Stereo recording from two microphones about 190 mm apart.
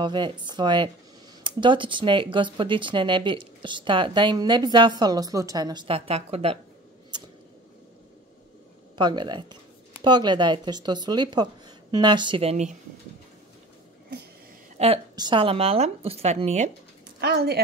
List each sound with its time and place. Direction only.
0.0 s speech: 25° right (ahead or behind)
8.9 s speech: 25° right (ahead or behind)
14.8 s a woman's voice: 35° right (ahead or behind)
17.2 s speech: 55° right (ahead or behind)